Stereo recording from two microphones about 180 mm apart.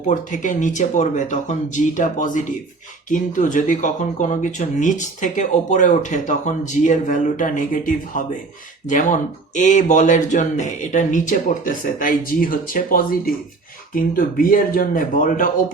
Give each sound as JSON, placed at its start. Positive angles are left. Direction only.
{"t": 0.1, "sound": "speech", "side_deg": 45}